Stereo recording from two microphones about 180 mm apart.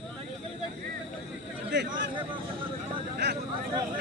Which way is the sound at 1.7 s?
75° right (ahead or behind).